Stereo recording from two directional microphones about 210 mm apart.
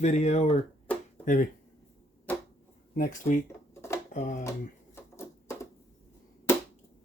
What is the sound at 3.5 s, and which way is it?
Dishes, 10° left (ahead or behind).